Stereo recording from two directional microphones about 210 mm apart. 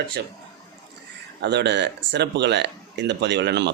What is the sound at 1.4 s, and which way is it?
Speech, 55° right (ahead or behind).